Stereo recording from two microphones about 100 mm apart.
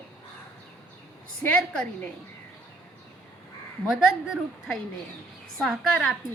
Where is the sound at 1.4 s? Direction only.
10° left (ahead or behind).